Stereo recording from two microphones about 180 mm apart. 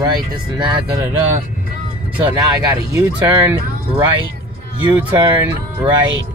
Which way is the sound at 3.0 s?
15° right (ahead or behind).